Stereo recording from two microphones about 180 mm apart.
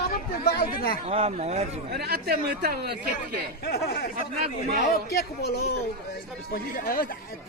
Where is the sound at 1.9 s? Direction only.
60° right (ahead or behind).